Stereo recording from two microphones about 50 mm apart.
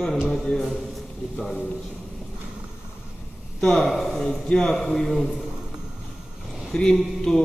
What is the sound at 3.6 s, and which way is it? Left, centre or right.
A man's voice, centre.